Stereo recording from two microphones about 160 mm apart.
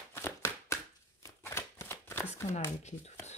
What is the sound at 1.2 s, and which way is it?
Shuffling cards, 15° left (ahead or behind).